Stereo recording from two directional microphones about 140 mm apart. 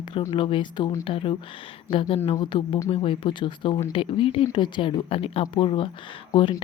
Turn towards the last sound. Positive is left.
turn(degrees=40)  # may be behind; listen again after turning